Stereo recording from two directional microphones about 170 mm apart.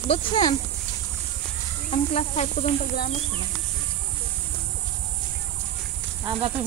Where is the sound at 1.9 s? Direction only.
40° left (ahead or behind).